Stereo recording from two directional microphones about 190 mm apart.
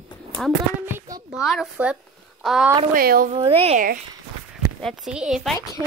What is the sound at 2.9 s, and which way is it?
Speech, 50° right (ahead or behind).